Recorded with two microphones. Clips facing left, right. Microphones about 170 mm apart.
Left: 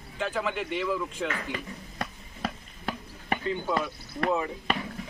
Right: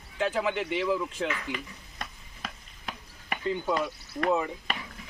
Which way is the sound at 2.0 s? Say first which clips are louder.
Left 7 dB; 40° left (ahead or behind).